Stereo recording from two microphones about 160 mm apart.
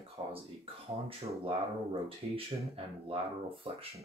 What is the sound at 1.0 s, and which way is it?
Speech, 35° right (ahead or behind).